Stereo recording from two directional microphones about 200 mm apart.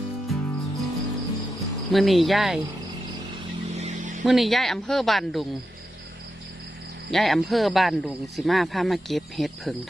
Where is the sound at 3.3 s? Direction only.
35° right (ahead or behind).